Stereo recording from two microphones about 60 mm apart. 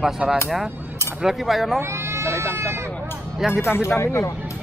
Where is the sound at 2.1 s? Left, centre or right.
Right.